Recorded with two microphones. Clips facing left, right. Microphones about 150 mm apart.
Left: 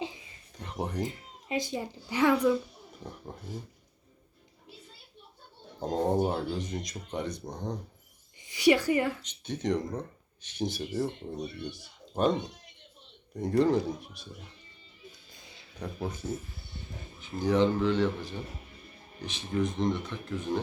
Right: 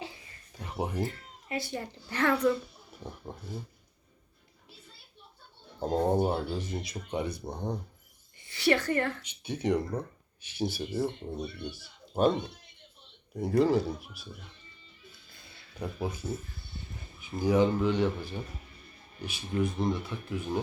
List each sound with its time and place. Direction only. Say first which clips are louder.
0.5 s a sound: right 1 dB; 10° right (ahead or behind)
1.0 s speech: even; 15° left (ahead or behind)
5.8 s speech: right 1 dB; 5° right (ahead or behind)
8.4 s a woman's voice: left 3 dB; 15° left (ahead or behind)
9.2 s speech: right 1 dB; 10° right (ahead or behind)
13.3 s speech: even; 5° right (ahead or behind)
15.1 s music: left 2 dB; 15° left (ahead or behind)
15.8 s speech: right 1 dB; 10° right (ahead or behind)
17.2 s speech: even; 10° right (ahead or behind)